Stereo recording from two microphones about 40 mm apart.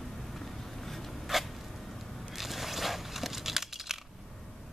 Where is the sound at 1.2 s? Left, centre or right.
Centre.